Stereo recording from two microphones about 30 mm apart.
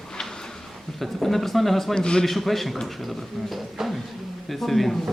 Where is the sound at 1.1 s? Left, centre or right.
Centre.